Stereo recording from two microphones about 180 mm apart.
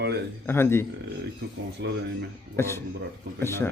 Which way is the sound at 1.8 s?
75° right (ahead or behind).